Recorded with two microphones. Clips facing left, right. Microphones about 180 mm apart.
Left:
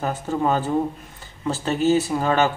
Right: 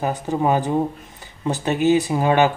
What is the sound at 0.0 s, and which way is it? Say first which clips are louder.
Speech: right 2 dB; 15° right (ahead or behind).